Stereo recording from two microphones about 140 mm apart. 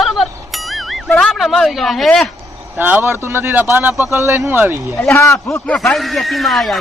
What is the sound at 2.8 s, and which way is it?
Speech, 15° right (ahead or behind).